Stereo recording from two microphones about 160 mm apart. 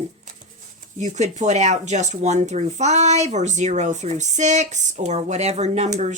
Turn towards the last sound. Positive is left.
turn(degrees=-45)  # may be behind; listen again after turning